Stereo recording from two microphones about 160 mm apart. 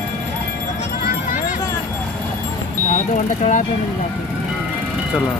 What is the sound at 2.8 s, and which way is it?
Vehicle, 50° left (ahead or behind).